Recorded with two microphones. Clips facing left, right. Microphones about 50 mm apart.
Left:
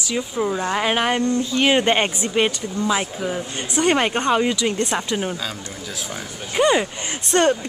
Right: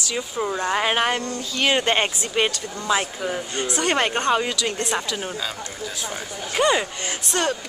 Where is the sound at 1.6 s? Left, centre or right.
Centre.